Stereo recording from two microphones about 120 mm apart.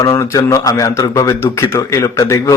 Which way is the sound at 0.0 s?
25° left (ahead or behind).